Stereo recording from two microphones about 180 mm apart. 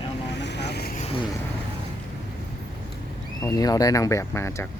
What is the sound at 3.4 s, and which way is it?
Speech, 20° left (ahead or behind).